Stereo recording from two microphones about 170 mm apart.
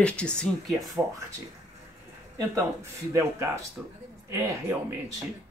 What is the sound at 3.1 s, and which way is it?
Speech, 15° right (ahead or behind).